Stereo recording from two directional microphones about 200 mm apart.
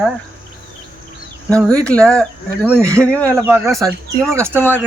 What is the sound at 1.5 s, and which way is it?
Speech, 15° right (ahead or behind).